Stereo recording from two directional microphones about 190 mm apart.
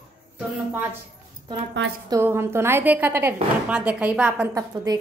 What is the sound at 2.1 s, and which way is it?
A woman's voice, 15° right (ahead or behind).